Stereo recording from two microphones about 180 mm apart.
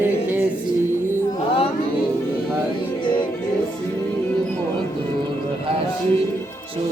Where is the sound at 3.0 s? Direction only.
25° left (ahead or behind).